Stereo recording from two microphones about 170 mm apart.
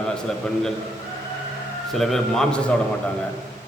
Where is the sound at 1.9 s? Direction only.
Centre (ahead or behind).